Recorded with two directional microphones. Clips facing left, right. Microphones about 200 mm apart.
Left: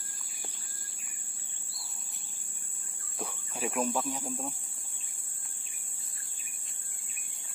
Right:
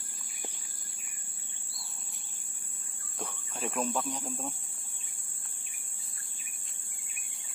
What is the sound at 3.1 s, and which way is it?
Speech, 10° left (ahead or behind).